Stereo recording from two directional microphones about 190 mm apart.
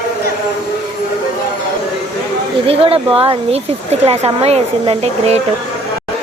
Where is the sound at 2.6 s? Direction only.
30° right (ahead or behind).